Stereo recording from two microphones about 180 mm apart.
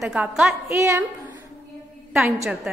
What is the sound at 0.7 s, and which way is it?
Speech, 15° right (ahead or behind).